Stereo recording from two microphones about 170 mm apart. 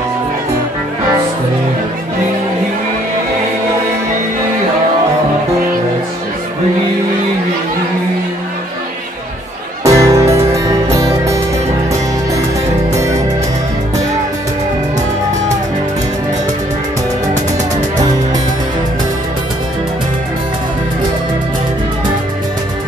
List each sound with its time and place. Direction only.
9.8 s music: 15° right (ahead or behind)